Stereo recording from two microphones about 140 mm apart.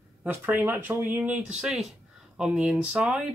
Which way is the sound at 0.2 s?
10° right (ahead or behind).